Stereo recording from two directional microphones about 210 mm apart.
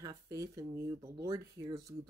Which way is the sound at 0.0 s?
15° right (ahead or behind).